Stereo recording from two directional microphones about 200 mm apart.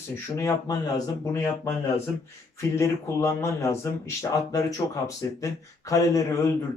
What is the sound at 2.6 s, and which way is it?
Speech, 15° left (ahead or behind).